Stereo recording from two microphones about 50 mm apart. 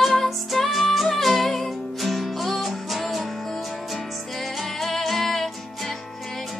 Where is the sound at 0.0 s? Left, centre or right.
Centre.